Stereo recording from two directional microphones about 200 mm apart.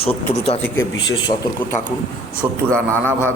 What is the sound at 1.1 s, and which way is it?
Speech, 20° left (ahead or behind).